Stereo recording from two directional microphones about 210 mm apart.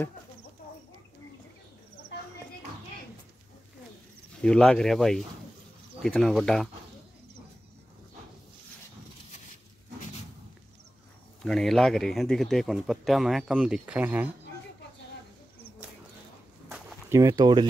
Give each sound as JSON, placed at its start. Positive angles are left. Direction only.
{"t": 4.4, "sound": "speech", "side_deg": 5}
{"t": 11.4, "sound": "speech", "side_deg": 0}
{"t": 16.6, "sound": "a sound", "side_deg": -10}